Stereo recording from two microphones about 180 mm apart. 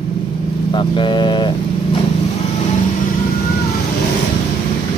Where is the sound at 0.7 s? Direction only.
25° left (ahead or behind).